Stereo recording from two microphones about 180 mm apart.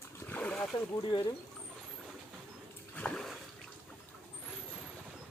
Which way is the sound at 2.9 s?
5° left (ahead or behind).